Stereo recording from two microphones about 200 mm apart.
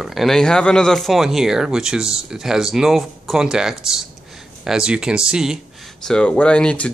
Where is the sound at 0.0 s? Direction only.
Centre (ahead or behind).